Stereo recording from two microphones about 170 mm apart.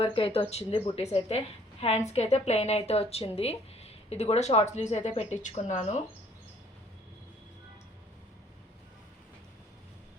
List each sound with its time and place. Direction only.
0.0 s a woman's voice: 35° left (ahead or behind)